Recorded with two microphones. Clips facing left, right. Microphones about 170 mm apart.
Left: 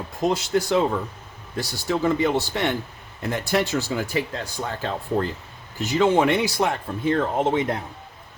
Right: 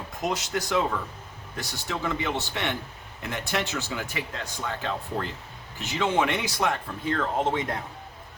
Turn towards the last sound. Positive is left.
turn(degrees=25)  # may be behind; listen again after turning